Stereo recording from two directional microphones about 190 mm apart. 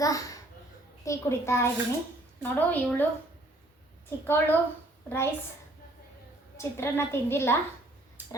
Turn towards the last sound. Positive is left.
turn(degrees=15)  # may be behind; listen again after turning